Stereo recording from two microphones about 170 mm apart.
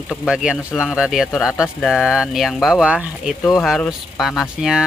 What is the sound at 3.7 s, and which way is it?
Speech, centre (ahead or behind).